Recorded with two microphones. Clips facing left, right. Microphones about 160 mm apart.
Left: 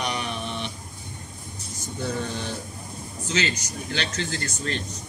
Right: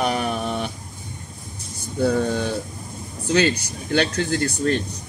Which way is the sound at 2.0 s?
55° right (ahead or behind).